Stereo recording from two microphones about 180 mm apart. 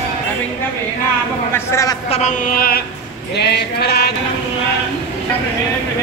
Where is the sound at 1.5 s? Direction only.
15° left (ahead or behind).